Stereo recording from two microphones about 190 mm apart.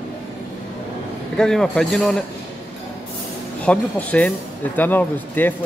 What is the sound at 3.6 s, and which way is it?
A man's voice, 5° left (ahead or behind).